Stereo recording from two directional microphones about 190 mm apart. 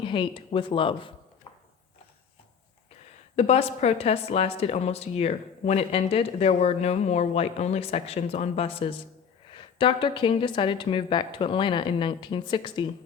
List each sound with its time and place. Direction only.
0.0 s a woman's voice: 25° left (ahead or behind)
3.3 s a woman's voice: 35° left (ahead or behind)